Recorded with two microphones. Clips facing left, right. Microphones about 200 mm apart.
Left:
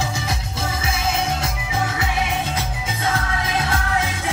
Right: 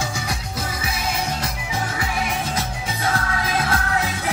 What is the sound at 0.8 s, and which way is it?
Music, 25° left (ahead or behind).